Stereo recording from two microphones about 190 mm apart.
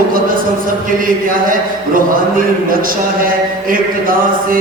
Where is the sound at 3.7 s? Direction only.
45° right (ahead or behind).